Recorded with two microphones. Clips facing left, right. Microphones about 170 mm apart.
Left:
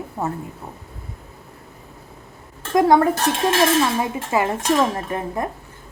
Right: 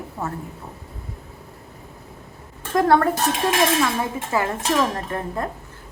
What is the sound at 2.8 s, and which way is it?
A woman's voice, 15° left (ahead or behind).